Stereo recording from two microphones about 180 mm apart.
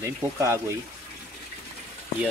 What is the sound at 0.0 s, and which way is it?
Speech, 15° right (ahead or behind).